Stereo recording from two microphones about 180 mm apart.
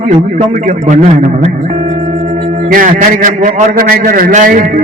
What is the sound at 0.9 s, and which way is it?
Speech, 45° right (ahead or behind).